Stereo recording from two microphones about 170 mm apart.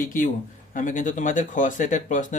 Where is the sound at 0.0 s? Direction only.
50° left (ahead or behind).